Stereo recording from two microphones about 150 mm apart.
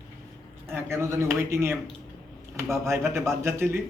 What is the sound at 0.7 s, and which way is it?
A man's voice, 15° right (ahead or behind).